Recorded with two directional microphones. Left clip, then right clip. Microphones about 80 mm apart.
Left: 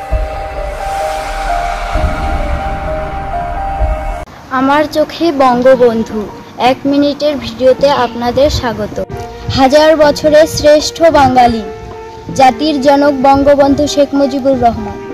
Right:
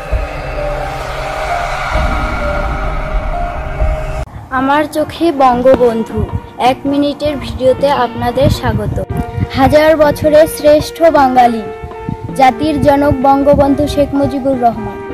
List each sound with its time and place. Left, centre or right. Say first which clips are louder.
4.5 s a woman's voice: left 2 dB; right
9.6 s speech: left 1 dB; centre